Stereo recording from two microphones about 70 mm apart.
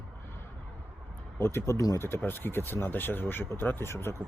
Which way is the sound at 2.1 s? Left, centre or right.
Left.